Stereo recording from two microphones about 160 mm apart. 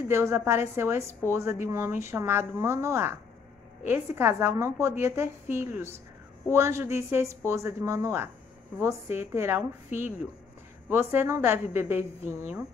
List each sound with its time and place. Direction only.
0.1 s a woman's voice: 15° right (ahead or behind)